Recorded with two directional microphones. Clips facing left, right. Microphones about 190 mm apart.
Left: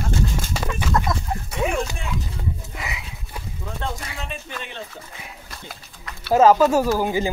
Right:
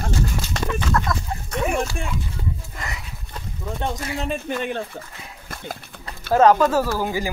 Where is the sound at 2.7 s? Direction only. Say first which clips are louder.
Left 1 dB; 5° left (ahead or behind).